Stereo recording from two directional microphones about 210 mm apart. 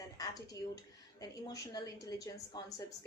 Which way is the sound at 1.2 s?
20° left (ahead or behind).